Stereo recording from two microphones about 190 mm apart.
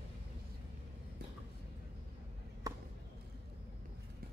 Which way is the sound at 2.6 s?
20° right (ahead or behind).